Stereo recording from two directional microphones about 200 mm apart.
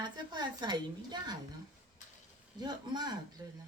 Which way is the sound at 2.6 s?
20° right (ahead or behind).